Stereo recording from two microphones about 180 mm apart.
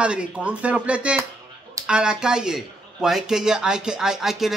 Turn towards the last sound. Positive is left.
turn(degrees=0)  # may be behind; listen again after turning